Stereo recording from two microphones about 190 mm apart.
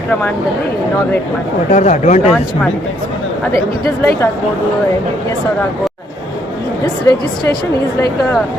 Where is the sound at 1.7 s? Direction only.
40° left (ahead or behind).